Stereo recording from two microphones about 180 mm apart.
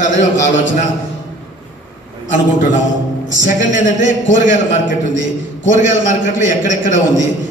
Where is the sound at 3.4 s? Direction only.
45° left (ahead or behind).